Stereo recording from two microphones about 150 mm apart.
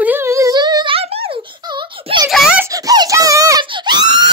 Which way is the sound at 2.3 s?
Centre (ahead or behind).